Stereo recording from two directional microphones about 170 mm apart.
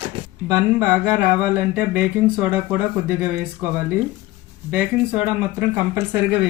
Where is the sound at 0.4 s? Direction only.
20° right (ahead or behind).